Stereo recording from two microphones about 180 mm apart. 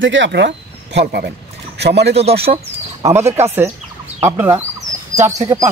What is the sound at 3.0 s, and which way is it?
Speech, 15° right (ahead or behind).